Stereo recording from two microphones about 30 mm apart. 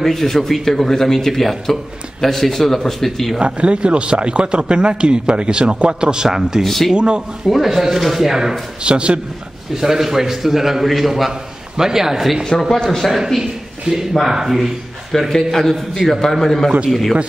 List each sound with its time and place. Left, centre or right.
0.0 s a man's voice: centre
3.3 s a man's voice: right
6.6 s a man's voice: centre
7.0 s a man's voice: right
7.4 s a man's voice: centre
8.8 s a man's voice: right
9.8 s a man's voice: centre
12.6 s a man's voice: centre
13.4 s a man's voice: right
15.1 s a man's voice: centre